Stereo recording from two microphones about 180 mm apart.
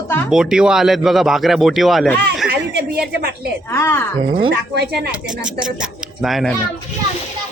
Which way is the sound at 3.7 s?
15° left (ahead or behind).